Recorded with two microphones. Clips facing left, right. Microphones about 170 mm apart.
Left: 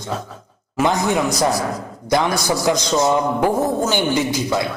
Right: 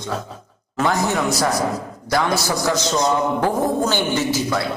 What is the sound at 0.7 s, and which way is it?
A man's voice, 15° left (ahead or behind).